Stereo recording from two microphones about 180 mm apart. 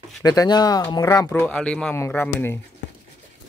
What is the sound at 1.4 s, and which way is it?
Speech, 5° left (ahead or behind).